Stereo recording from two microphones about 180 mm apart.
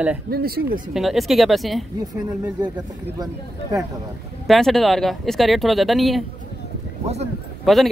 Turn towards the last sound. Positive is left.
turn(degrees=0)  # may be behind; listen again after turning